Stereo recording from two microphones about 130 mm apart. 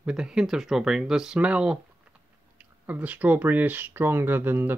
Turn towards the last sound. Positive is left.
turn(degrees=-15)  # may be behind; listen again after turning